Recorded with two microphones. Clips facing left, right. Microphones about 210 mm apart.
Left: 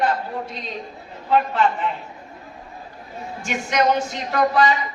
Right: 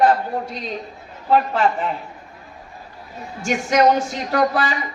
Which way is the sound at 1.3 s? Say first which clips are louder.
Right 2 dB; 45° right (ahead or behind).